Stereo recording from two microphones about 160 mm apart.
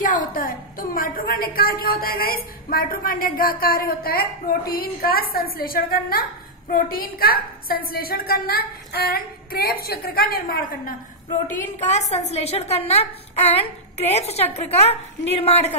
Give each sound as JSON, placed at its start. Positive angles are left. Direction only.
{"t": 0.0, "sound": "a woman's voice", "side_deg": 55}
{"t": 11.8, "sound": "a woman's voice", "side_deg": 45}